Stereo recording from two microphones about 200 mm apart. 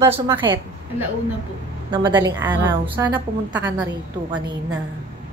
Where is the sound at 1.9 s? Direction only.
20° right (ahead or behind); by 4.4 s 5° right (ahead or behind).